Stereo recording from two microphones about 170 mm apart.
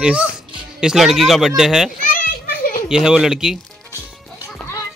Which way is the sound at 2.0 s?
55° left (ahead or behind).